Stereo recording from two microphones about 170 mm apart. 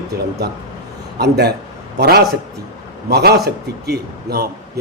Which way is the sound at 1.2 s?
75° right (ahead or behind).